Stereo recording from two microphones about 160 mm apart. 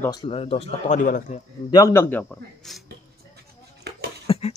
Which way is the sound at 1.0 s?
55° left (ahead or behind).